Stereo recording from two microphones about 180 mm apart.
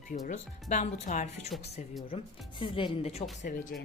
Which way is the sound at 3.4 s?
45° left (ahead or behind).